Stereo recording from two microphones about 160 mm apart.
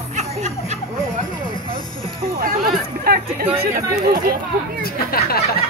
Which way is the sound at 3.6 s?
65° right (ahead or behind).